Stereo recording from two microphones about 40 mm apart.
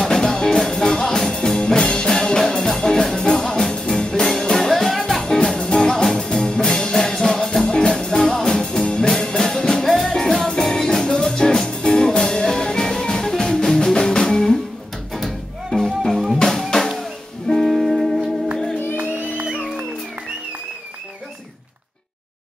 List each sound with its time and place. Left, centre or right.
0.0 s music: centre
4.2 s music: centre
9.8 s music: centre
10.1 s music: centre
16.4 s drum kit: centre
17.5 s music: centre
19.4 s music: centre